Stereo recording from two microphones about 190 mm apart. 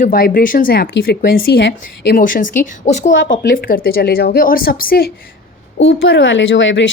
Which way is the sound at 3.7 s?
50° left (ahead or behind).